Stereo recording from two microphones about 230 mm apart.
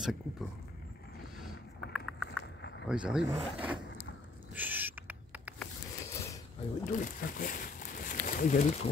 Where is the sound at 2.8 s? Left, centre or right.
Centre.